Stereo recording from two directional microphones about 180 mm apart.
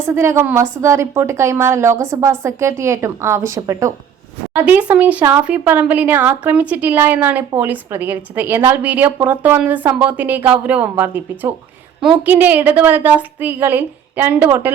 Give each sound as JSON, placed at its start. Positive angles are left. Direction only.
{"t": 0.0, "sound": "speech", "side_deg": -15}